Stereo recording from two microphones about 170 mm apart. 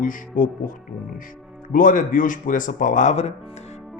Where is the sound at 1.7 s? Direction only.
50° left (ahead or behind).